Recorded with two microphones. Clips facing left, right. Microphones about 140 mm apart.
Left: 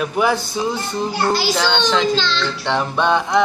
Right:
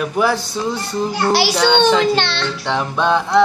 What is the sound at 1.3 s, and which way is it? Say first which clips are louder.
A child's voice: right 6 dB; 70° right (ahead or behind).